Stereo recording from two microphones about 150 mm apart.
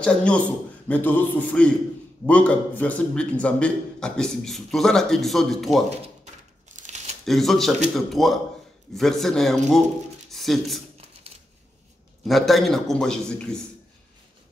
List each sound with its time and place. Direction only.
0.0 s a man's voice: 5° left (ahead or behind)
6.7 s crumpling: 55° right (ahead or behind)
7.2 s a man's voice: centre (ahead or behind)
12.3 s a man's voice: centre (ahead or behind)